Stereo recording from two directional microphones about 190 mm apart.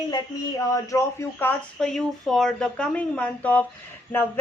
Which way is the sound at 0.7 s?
15° left (ahead or behind).